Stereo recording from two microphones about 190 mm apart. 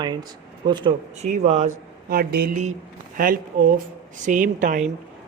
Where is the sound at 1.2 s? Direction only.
35° right (ahead or behind).